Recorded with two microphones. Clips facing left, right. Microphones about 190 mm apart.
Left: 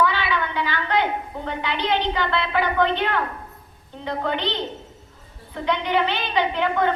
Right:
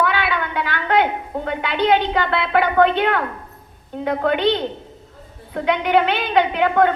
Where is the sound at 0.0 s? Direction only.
60° right (ahead or behind).